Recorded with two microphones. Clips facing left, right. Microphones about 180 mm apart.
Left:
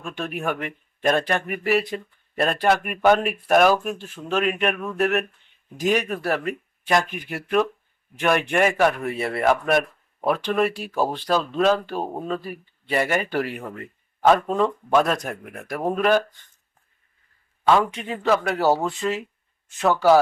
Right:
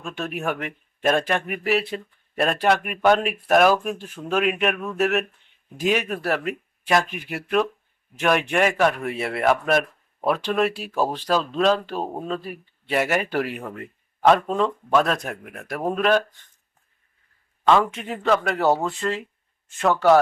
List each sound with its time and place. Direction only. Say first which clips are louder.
0.1 s speech: even; 5° right (ahead or behind)
17.7 s speech: even; centre (ahead or behind)